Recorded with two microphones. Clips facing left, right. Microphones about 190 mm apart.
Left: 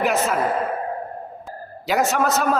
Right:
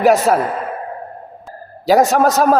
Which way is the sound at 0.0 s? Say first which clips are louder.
Right 9 dB; 40° right (ahead or behind).